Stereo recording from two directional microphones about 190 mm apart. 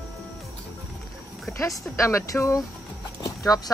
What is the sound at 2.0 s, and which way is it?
Speech, 15° left (ahead or behind).